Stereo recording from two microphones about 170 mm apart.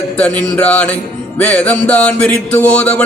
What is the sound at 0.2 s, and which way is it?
Speech, 5° left (ahead or behind).